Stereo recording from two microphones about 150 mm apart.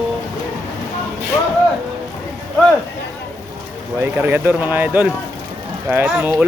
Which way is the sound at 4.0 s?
15° right (ahead or behind).